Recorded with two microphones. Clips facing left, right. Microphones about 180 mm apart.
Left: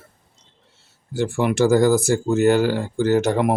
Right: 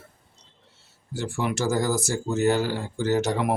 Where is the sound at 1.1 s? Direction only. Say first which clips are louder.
Left 7 dB; 60° left (ahead or behind).